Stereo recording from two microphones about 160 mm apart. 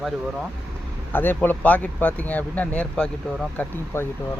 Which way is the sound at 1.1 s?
10° left (ahead or behind).